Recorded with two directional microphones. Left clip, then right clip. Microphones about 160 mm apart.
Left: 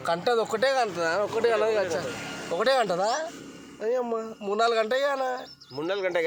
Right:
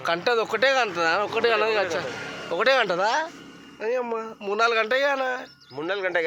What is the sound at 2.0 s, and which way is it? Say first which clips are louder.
Speech: right 2 dB; 40° right (ahead or behind).